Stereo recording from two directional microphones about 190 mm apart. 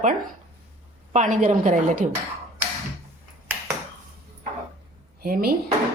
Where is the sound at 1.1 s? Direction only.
40° right (ahead or behind).